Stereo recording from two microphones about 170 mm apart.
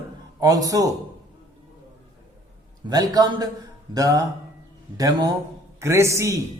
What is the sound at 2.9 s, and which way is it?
A man's voice, 25° right (ahead or behind).